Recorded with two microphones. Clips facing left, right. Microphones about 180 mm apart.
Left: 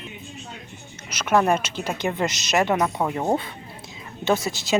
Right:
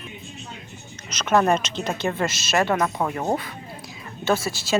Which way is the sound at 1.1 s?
10° left (ahead or behind).